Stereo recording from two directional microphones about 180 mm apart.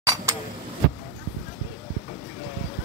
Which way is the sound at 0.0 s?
20° right (ahead or behind).